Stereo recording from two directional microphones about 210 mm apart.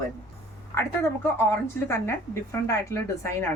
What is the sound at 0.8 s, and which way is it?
A woman's voice, 10° left (ahead or behind).